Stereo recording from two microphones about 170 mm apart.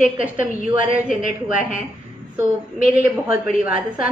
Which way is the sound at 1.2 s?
50° left (ahead or behind).